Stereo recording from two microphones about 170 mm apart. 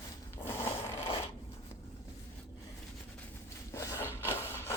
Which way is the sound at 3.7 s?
15° left (ahead or behind).